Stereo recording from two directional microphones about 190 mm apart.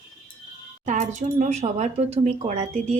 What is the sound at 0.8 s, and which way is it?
Speech, 40° right (ahead or behind).